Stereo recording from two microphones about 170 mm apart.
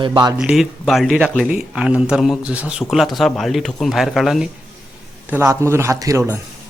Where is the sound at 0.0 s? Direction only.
25° right (ahead or behind).